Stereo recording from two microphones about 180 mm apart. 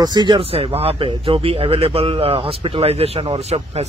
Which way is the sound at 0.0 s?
25° right (ahead or behind).